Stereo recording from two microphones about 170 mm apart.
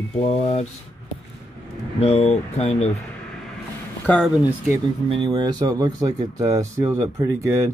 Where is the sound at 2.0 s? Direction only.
40° left (ahead or behind).